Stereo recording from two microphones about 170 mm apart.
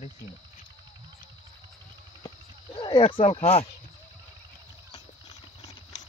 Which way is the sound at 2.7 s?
30° left (ahead or behind).